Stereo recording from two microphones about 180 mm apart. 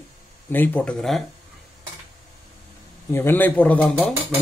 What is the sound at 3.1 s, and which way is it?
Speech, 10° left (ahead or behind).